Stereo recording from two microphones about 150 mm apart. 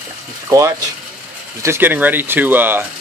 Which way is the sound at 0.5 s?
20° right (ahead or behind).